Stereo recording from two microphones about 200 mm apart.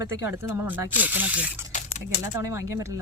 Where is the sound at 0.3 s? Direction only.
10° right (ahead or behind).